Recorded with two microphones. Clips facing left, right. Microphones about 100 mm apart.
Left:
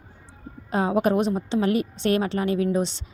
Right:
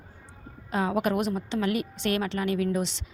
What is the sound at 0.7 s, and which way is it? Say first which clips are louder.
A woman's voice: left 4 dB; 35° left (ahead or behind).